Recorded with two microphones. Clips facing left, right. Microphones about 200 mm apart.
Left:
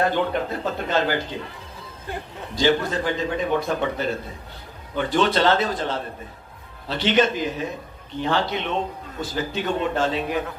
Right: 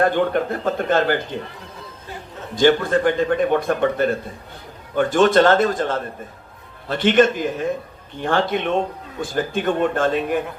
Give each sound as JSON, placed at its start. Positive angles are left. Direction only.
{"t": 0.0, "sound": "a man's voice", "side_deg": -50}
{"t": 2.6, "sound": "a man's voice", "side_deg": -55}